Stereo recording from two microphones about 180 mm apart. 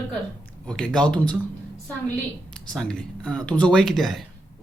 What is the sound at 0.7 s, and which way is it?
Speech, 5° left (ahead or behind).